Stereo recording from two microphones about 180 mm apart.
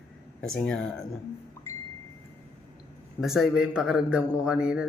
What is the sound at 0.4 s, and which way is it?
Speech, 5° left (ahead or behind).